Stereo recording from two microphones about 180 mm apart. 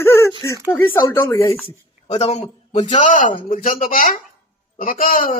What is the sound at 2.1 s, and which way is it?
A man's voice, 35° left (ahead or behind).